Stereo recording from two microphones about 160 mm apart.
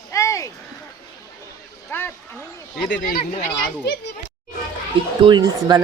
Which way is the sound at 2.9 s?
65° left (ahead or behind).